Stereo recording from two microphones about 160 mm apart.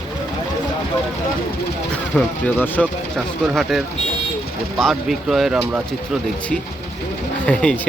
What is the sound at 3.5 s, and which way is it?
Speech, centre (ahead or behind).